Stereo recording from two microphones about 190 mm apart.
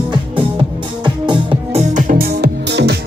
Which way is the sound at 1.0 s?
25° right (ahead or behind).